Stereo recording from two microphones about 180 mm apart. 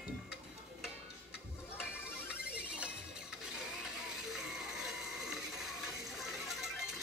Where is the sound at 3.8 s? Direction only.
Centre (ahead or behind).